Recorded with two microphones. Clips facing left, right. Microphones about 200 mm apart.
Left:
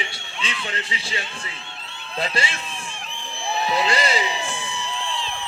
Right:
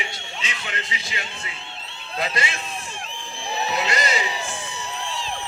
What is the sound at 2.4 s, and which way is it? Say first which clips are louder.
Speech: left 2 dB; 30° left (ahead or behind).